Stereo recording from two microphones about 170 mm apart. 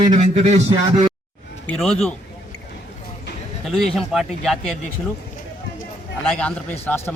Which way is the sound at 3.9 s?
Centre (ahead or behind).